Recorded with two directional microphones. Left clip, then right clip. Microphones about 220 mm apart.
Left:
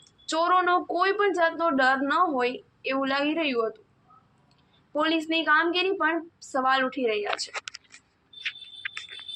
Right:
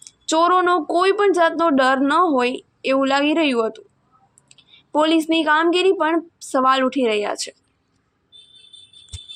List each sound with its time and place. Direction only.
0.0 s speech: 55° right (ahead or behind)
4.9 s speech: 55° right (ahead or behind)